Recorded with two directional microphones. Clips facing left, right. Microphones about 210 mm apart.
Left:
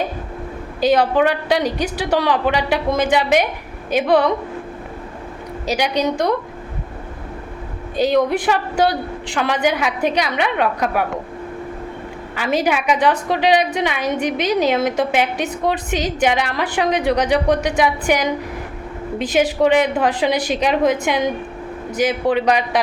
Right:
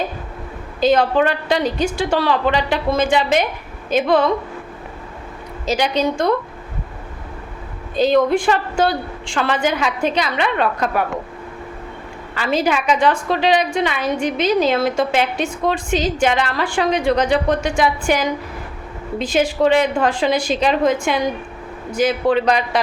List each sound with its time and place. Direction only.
0.8 s a woman's voice: 15° left (ahead or behind)
5.6 s a woman's voice: 15° left (ahead or behind)
7.9 s a woman's voice: 15° left (ahead or behind)
12.3 s a woman's voice: 15° left (ahead or behind)
19.3 s a woman's voice: 15° left (ahead or behind)